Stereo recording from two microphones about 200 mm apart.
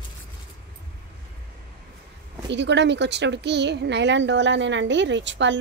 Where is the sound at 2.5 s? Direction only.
60° right (ahead or behind).